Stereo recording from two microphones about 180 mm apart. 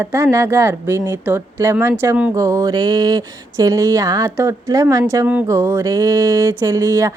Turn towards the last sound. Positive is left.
turn(degrees=-15)  # may be behind; listen again after turning